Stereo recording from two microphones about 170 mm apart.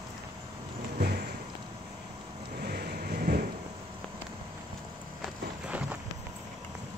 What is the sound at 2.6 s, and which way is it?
Vehicle, 65° right (ahead or behind).